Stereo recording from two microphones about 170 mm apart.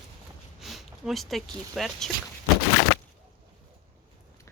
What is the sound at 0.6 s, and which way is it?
Speech, centre (ahead or behind).